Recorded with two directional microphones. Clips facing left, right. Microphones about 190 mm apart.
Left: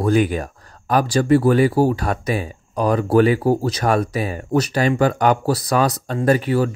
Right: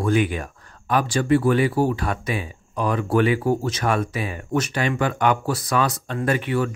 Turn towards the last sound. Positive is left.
turn(degrees=35)  # may be behind; listen again after turning